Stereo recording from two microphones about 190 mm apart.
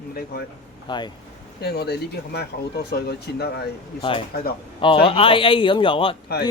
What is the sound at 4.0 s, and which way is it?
A man's voice, 30° left (ahead or behind).